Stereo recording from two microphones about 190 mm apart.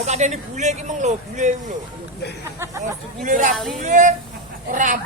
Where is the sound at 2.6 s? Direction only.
15° right (ahead or behind).